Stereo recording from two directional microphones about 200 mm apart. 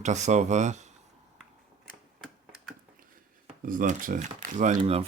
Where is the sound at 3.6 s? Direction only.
45° right (ahead or behind).